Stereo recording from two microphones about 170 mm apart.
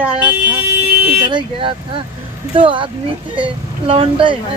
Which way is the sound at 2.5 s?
30° right (ahead or behind).